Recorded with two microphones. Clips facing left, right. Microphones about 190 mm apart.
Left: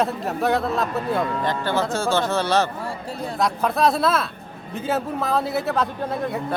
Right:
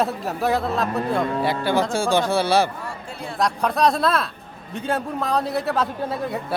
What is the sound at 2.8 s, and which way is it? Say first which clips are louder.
Speech: left 3 dB; 40° left (ahead or behind).